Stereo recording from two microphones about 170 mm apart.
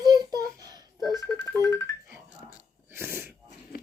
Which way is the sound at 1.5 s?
15° left (ahead or behind).